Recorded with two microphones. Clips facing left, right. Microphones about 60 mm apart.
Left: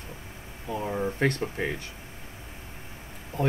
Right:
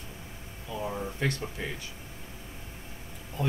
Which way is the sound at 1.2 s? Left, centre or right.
Left.